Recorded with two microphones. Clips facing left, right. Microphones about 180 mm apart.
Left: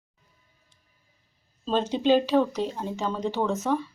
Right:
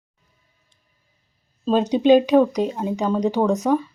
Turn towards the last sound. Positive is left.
turn(degrees=-15)  # may be behind; listen again after turning